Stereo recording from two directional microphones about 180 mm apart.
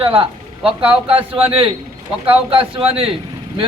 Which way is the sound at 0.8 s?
5° right (ahead or behind).